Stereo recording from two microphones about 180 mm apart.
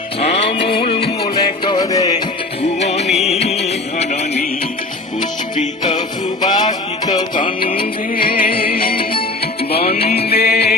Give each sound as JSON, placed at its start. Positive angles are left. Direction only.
{"t": 0.2, "sound": "music", "side_deg": 35}
{"t": 2.6, "sound": "music", "side_deg": 35}
{"t": 6.4, "sound": "music", "side_deg": 25}
{"t": 8.1, "sound": "music", "side_deg": 55}
{"t": 9.6, "sound": "music", "side_deg": 35}
{"t": 9.9, "sound": "music", "side_deg": 55}